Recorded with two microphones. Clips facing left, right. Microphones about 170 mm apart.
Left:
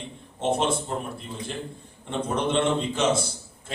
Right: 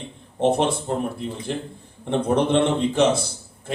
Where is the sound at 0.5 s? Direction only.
55° right (ahead or behind).